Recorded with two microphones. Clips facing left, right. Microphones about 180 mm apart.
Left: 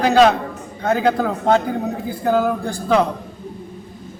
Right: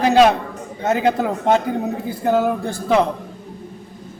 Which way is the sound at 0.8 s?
20° right (ahead or behind).